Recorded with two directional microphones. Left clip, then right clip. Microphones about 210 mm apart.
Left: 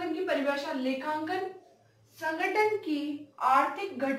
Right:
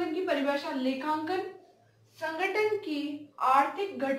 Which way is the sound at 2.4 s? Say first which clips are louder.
Left 1 dB; 20° right (ahead or behind).